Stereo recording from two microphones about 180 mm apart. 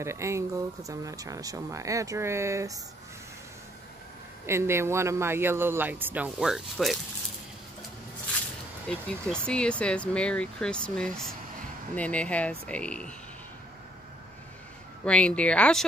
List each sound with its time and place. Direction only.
0.0 s speech: 15° right (ahead or behind)
4.5 s speech: 15° right (ahead or behind)
8.8 s speech: 5° left (ahead or behind)
15.0 s speech: 5° left (ahead or behind)